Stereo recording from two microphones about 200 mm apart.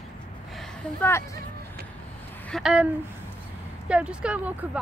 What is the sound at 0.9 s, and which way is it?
Speech, 10° left (ahead or behind).